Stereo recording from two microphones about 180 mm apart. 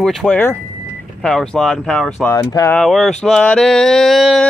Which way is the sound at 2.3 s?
20° left (ahead or behind).